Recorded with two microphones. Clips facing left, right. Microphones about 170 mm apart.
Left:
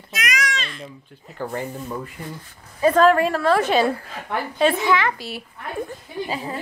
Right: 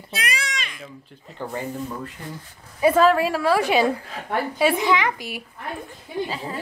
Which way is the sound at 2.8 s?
5° right (ahead or behind).